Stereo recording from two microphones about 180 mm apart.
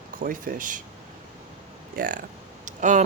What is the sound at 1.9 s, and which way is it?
Speech, 50° right (ahead or behind).